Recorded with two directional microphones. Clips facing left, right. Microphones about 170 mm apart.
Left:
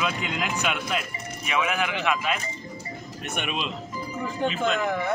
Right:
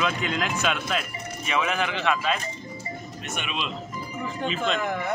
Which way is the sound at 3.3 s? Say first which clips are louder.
Left 2 dB; 50° left (ahead or behind).